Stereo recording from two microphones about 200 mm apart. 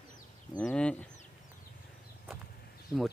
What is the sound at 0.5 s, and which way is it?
Chicken, 5° left (ahead or behind).